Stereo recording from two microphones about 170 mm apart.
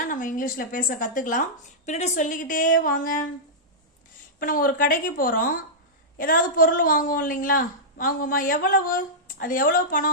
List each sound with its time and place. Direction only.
0.0 s speech: 50° left (ahead or behind)
4.4 s a woman's voice: 55° left (ahead or behind)